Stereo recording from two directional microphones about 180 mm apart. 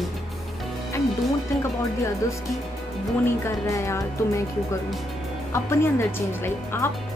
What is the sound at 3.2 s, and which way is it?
Speech, 15° left (ahead or behind).